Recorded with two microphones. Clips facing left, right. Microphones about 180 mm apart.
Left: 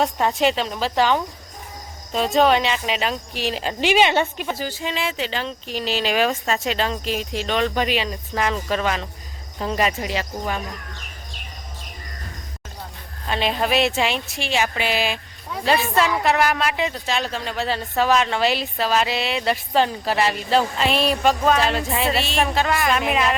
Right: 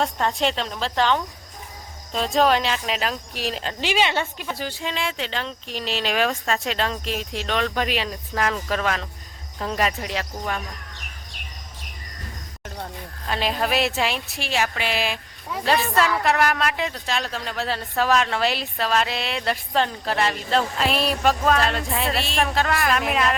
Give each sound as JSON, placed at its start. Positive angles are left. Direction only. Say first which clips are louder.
{"t": 0.0, "sound": "speech", "louder": "left 3 dB", "side_deg": 5}
{"t": 3.7, "sound": "speech", "louder": "left 6 dB", "side_deg": 15}
{"t": 4.5, "sound": "speech", "louder": "left 2 dB", "side_deg": 0}
{"t": 13.2, "sound": "speech", "louder": "left 2 dB", "side_deg": 0}